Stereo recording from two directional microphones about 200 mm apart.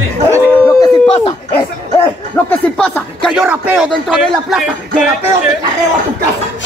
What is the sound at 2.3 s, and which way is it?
Speech, 5° left (ahead or behind).